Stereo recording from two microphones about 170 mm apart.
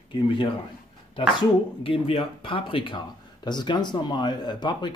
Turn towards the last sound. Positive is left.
turn(degrees=25)  # may be behind; listen again after turning